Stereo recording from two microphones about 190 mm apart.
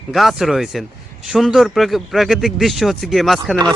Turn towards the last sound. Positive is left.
turn(degrees=0)  # may be behind; listen again after turning